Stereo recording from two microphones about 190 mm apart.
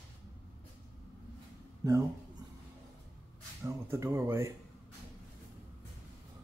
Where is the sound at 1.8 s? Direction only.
15° right (ahead or behind).